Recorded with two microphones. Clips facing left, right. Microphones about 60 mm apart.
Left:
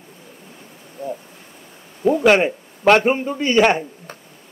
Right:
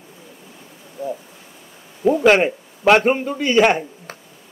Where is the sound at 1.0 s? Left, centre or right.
Left.